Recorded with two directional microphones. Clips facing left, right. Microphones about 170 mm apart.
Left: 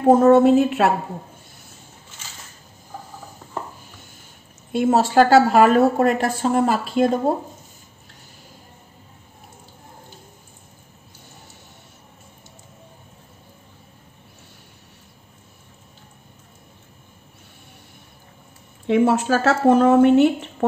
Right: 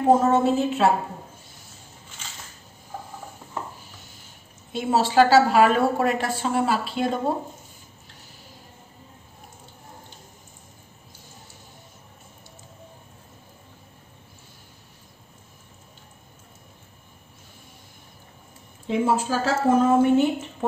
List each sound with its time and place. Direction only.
0.2 s a woman's voice: 60° left (ahead or behind)
4.7 s a woman's voice: 50° left (ahead or behind)
18.9 s speech: 70° left (ahead or behind)